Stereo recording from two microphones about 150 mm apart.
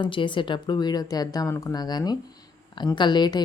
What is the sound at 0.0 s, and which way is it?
Speech, 35° left (ahead or behind).